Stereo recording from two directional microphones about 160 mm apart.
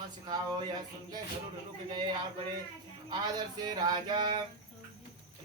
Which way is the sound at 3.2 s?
25° right (ahead or behind).